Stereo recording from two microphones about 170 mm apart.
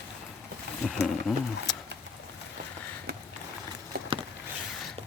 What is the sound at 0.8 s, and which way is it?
Speech, 5° right (ahead or behind).